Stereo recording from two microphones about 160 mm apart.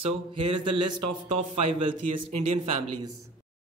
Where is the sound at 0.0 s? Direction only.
35° right (ahead or behind).